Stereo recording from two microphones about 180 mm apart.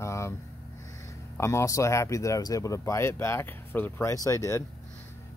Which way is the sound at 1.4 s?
15° left (ahead or behind).